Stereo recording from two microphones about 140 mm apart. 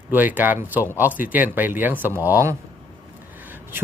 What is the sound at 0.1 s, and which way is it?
Speech, 15° right (ahead or behind).